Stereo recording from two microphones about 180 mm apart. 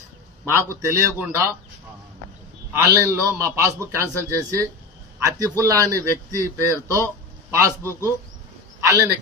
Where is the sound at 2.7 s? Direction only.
15° right (ahead or behind).